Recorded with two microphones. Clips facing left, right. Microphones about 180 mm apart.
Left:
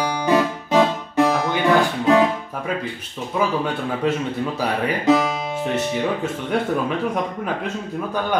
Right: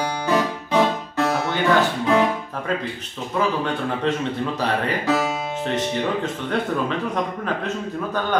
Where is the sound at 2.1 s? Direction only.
15° left (ahead or behind).